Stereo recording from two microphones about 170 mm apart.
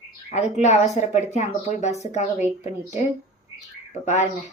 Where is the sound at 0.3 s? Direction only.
40° left (ahead or behind).